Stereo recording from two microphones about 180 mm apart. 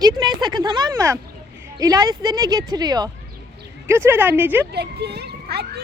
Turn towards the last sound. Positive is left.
turn(degrees=-65)  # may be behind; listen again after turning